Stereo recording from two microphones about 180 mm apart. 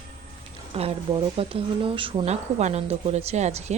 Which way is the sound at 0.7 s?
30° right (ahead or behind).